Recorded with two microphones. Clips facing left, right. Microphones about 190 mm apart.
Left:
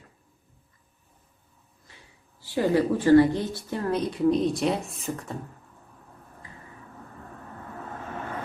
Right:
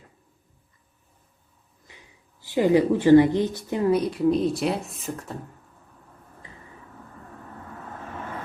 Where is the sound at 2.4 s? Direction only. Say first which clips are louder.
Right 4 dB; 20° right (ahead or behind); by 5.3 s centre (ahead or behind).